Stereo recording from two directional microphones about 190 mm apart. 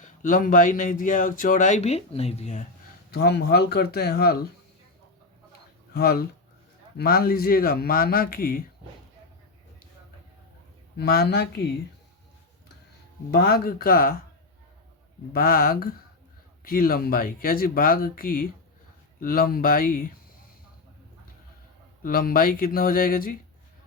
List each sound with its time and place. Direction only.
0.0 s speech: 45° left (ahead or behind)
3.1 s speech: 55° left (ahead or behind)
5.9 s speech: 55° left (ahead or behind)
10.9 s speech: 55° left (ahead or behind)
13.3 s speech: 55° left (ahead or behind)
15.3 s speech: 50° left (ahead or behind)
22.0 s speech: 50° left (ahead or behind)